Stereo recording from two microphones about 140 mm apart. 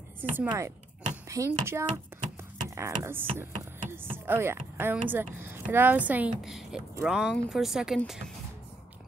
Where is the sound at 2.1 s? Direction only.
15° right (ahead or behind).